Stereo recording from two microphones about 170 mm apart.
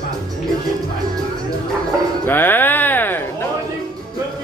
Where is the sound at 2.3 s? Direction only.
10° left (ahead or behind).